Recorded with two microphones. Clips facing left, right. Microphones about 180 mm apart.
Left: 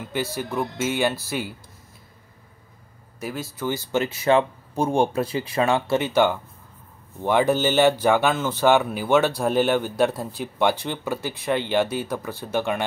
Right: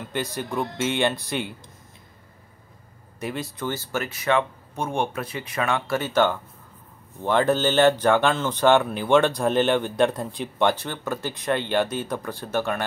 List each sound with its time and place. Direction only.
0.0 s speech: 5° left (ahead or behind)
3.2 s speech: centre (ahead or behind)
3.6 s speech: 15° left (ahead or behind)
4.0 s speech: 30° left (ahead or behind)
5.9 s speech: 15° left (ahead or behind)